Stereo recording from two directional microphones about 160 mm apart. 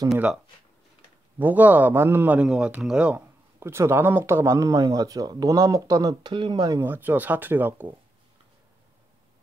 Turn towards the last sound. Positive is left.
turn(degrees=-10)  # may be behind; listen again after turning